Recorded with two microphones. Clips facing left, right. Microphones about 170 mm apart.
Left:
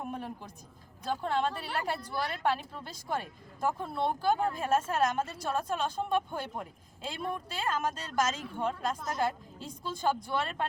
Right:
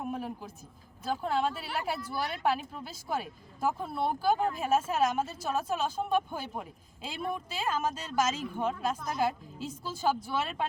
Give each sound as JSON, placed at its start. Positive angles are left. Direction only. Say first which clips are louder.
{"t": 0.0, "sound": "a woman's voice", "louder": "right 3 dB", "side_deg": -5}